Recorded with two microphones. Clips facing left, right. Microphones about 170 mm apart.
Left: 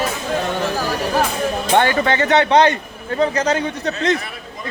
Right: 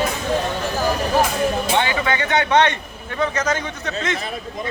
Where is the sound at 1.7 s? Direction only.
50° left (ahead or behind); by 4.1 s 35° left (ahead or behind).